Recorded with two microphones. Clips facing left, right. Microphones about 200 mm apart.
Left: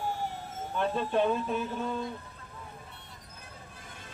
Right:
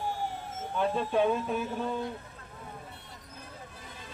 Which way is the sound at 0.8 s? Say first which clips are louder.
Right 1 dB; 5° right (ahead or behind).